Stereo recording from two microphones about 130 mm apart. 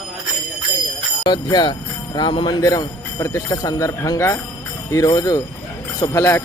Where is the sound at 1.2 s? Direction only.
35° left (ahead or behind).